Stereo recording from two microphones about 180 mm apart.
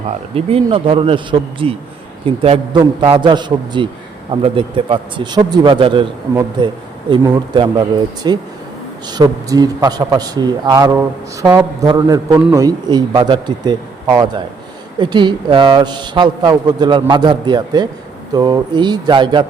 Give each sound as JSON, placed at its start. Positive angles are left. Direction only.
{"t": 0.3, "sound": "a man's voice", "side_deg": -30}